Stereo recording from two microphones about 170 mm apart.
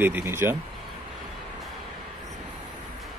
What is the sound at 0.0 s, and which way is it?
Speech, 15° right (ahead or behind).